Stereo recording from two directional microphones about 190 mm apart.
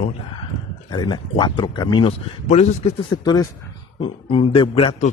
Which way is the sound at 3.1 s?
20° left (ahead or behind).